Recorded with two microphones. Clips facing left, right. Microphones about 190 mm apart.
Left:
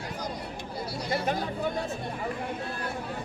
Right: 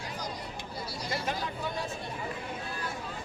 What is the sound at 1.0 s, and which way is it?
Chatter, 60° left (ahead or behind).